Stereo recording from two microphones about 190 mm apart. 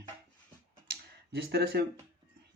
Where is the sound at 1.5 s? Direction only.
55° right (ahead or behind).